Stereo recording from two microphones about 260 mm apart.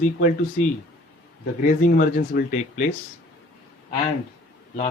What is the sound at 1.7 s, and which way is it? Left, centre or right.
Speech, left.